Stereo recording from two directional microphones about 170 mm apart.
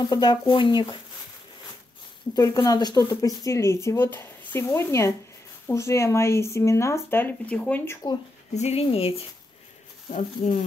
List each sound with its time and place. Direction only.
0.0 s speech: 25° left (ahead or behind)
2.3 s speech: 20° left (ahead or behind)
8.5 s speech: 40° left (ahead or behind)